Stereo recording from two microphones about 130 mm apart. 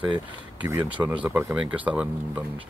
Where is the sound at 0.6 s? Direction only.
30° right (ahead or behind).